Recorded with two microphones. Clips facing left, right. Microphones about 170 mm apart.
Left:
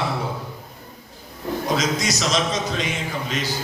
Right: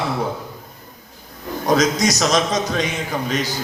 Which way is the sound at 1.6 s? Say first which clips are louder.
Right 7 dB; 40° right (ahead or behind).